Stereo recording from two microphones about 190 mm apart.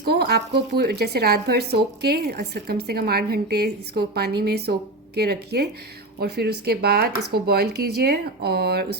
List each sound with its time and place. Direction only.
0.0 s a woman's voice: 55° right (ahead or behind)